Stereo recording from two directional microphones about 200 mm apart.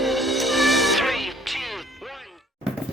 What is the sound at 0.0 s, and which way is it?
Music, centre (ahead or behind).